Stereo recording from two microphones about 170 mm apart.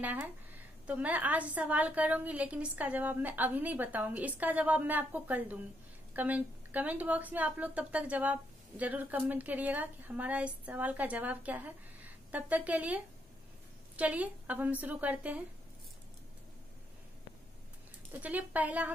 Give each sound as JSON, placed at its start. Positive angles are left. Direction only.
{"t": 0.0, "sound": "a woman's voice", "side_deg": -10}
{"t": 18.2, "sound": "a woman's voice", "side_deg": -10}